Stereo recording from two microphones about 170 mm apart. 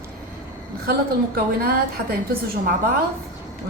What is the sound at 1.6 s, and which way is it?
Speech, 65° right (ahead or behind).